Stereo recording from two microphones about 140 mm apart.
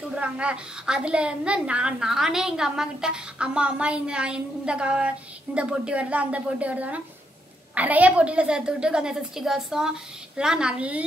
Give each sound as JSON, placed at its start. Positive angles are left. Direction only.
{"t": 0.1, "sound": "a woman's voice", "side_deg": -10}